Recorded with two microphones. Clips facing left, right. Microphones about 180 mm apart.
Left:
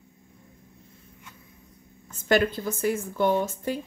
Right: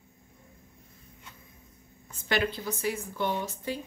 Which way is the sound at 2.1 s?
45° left (ahead or behind).